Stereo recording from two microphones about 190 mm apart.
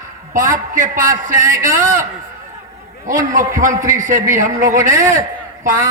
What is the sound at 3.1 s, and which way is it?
A woman's voice, 45° right (ahead or behind).